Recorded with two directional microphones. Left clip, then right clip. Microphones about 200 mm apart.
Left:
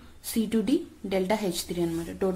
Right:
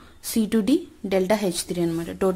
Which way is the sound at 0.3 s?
30° right (ahead or behind).